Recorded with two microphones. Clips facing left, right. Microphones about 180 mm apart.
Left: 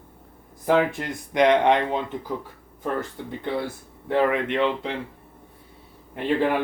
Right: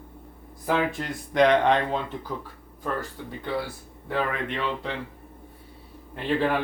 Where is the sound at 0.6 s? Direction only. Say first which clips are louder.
Left 4 dB; 20° left (ahead or behind).